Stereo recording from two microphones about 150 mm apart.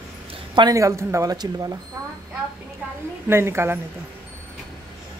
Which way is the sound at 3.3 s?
15° right (ahead or behind).